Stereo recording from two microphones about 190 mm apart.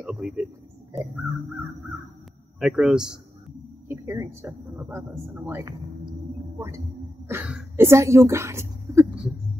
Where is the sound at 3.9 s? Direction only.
15° right (ahead or behind).